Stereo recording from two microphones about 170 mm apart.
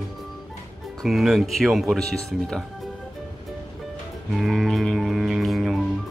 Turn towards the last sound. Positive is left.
turn(degrees=0)  # may be behind; listen again after turning